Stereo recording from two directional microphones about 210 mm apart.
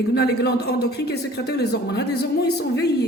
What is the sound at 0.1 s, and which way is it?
A man's voice, 50° left (ahead or behind).